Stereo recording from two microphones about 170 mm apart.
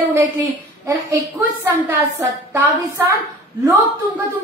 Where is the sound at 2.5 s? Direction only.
15° right (ahead or behind).